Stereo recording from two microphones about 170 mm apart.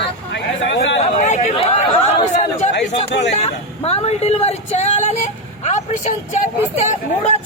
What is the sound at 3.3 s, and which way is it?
Speech, 40° left (ahead or behind).